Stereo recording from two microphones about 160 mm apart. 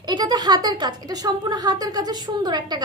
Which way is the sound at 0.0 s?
25° right (ahead or behind).